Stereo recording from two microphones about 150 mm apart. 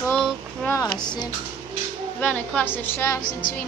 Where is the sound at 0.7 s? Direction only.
25° left (ahead or behind).